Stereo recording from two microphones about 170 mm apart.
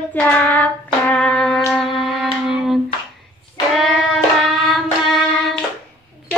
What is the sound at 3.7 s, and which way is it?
Child singing, centre (ahead or behind).